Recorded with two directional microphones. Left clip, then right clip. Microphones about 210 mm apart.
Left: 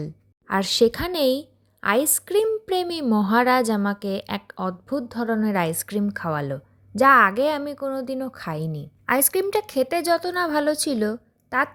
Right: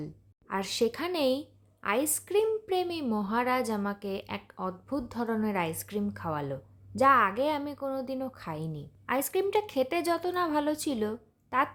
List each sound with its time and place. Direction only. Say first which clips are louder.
0.0 s a woman's voice: left 7 dB; 30° left (ahead or behind)